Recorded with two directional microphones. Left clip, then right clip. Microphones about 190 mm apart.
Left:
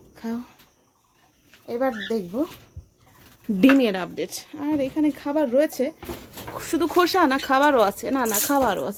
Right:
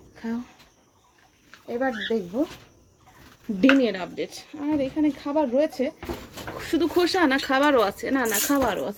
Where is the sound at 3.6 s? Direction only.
35° left (ahead or behind).